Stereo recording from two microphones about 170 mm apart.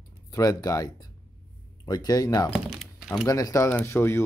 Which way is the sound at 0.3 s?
20° left (ahead or behind).